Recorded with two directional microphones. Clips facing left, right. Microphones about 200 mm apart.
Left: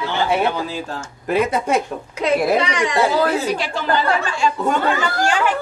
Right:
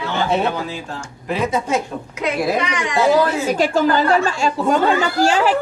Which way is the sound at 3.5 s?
45° right (ahead or behind).